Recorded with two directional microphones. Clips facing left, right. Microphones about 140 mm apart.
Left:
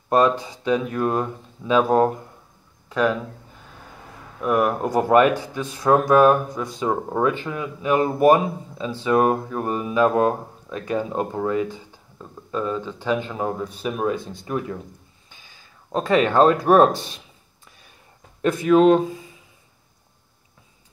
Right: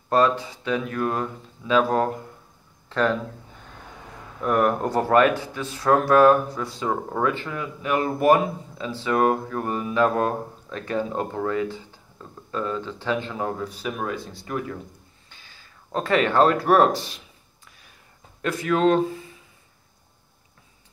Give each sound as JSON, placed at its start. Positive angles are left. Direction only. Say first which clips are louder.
{"t": 0.1, "sound": "speech", "louder": "left 2 dB", "side_deg": 15}
{"t": 4.4, "sound": "speech", "louder": "left 1 dB", "side_deg": 10}
{"t": 18.4, "sound": "speech", "louder": "left 6 dB", "side_deg": 20}